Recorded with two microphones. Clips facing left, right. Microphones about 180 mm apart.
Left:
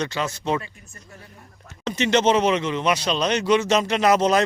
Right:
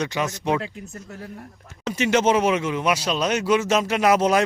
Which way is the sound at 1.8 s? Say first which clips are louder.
Even; 5° right (ahead or behind).